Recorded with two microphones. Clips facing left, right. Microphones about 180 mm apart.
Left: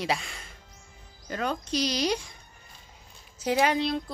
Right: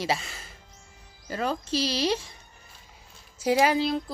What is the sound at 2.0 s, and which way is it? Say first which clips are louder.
Speech: right 1 dB; centre (ahead or behind).